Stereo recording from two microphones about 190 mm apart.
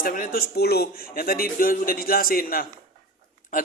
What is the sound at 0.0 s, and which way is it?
Speech, 45° left (ahead or behind).